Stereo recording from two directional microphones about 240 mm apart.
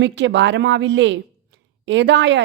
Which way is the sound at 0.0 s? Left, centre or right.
Right.